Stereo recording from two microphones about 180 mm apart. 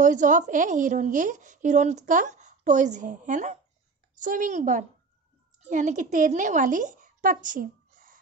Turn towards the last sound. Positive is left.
turn(degrees=-45)  # may be behind; listen again after turning